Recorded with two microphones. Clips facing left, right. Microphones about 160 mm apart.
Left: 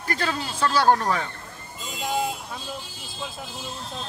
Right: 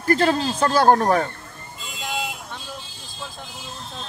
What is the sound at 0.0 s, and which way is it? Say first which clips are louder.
Speech: right 9 dB; 45° right (ahead or behind).